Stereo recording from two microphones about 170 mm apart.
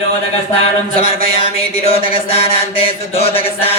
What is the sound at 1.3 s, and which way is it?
Chant, 35° left (ahead or behind).